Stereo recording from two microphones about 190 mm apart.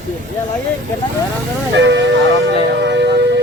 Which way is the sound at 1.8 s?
70° right (ahead or behind).